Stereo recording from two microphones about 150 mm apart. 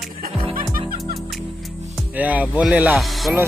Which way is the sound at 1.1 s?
Centre (ahead or behind).